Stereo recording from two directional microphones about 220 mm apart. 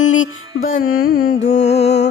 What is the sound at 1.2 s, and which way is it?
Music, 30° left (ahead or behind).